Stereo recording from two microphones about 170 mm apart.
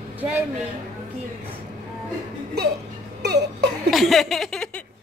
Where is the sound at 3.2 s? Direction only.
80° right.